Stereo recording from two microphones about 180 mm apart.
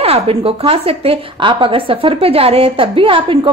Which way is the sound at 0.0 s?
35° right (ahead or behind).